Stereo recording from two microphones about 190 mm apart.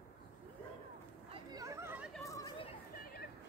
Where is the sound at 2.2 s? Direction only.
15° left (ahead or behind).